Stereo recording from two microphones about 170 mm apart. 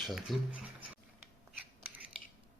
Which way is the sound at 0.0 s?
Centre (ahead or behind).